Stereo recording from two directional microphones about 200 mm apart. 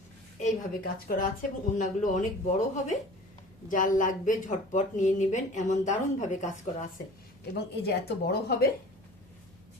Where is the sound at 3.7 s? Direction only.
40° left (ahead or behind).